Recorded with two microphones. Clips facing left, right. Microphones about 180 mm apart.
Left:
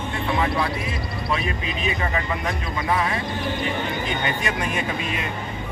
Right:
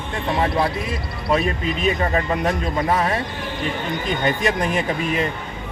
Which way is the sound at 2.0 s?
40° right (ahead or behind).